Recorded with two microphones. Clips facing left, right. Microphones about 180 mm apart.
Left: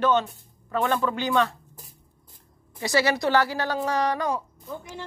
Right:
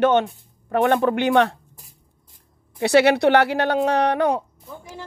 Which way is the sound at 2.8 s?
65° right (ahead or behind).